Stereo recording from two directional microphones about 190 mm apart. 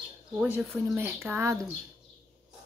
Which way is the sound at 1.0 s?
10° right (ahead or behind).